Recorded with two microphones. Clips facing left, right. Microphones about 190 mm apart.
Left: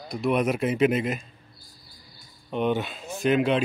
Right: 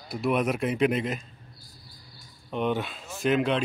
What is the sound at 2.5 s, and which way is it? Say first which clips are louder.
Speech: left 2 dB; centre (ahead or behind).